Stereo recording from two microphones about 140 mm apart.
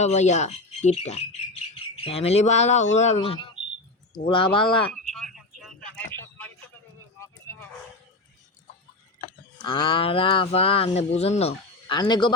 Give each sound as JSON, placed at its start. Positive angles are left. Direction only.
{"t": 0.0, "sound": "speech", "side_deg": 55}
{"t": 3.2, "sound": "speech", "side_deg": 40}
{"t": 4.9, "sound": "a sound", "side_deg": 0}
{"t": 6.1, "sound": "a sound", "side_deg": 10}
{"t": 9.6, "sound": "speech", "side_deg": 40}
{"t": 11.9, "sound": "speech", "side_deg": 30}